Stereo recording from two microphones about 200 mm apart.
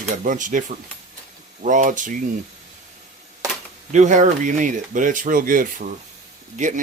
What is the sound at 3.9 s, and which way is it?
Speech, 40° right (ahead or behind).